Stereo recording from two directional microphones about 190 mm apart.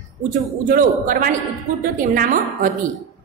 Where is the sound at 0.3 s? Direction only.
45° right (ahead or behind).